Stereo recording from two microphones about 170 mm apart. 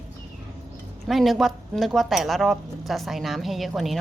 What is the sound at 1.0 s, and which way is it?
Speech, centre (ahead or behind).